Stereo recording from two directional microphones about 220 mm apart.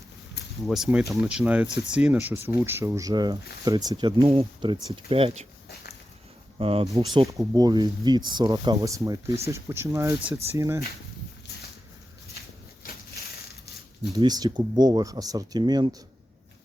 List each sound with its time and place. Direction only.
0.4 s a sound: 50° left (ahead or behind)
0.7 s speech: 5° right (ahead or behind); by 5.5 s 30° right (ahead or behind)
6.6 s speech: 25° right (ahead or behind)
14.2 s speech: 15° right (ahead or behind)